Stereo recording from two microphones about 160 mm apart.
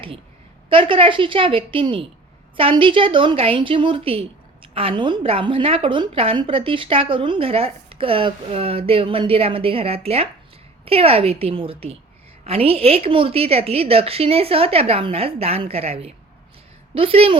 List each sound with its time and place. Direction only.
0.7 s a woman's voice: 35° right (ahead or behind)